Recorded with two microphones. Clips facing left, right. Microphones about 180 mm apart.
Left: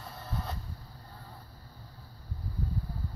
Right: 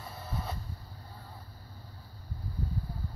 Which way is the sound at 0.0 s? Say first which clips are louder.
Even; 5° right (ahead or behind).